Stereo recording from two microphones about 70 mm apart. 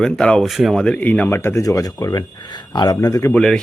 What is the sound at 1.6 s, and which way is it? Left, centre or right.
Speech, left.